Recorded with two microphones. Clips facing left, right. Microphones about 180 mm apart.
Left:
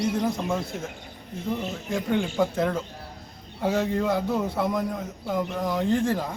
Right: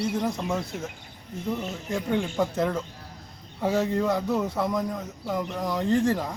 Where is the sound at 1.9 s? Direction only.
Centre (ahead or behind).